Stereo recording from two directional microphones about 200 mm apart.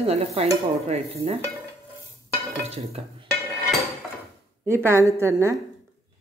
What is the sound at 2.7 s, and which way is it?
Dishes, 30° right (ahead or behind).